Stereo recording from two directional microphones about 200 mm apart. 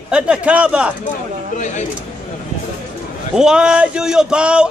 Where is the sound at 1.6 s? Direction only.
35° left (ahead or behind).